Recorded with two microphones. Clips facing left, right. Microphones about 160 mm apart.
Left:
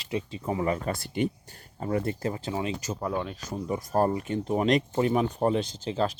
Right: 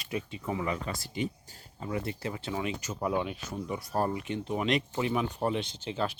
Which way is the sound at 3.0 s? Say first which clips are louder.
Right 2 dB; 10° right (ahead or behind).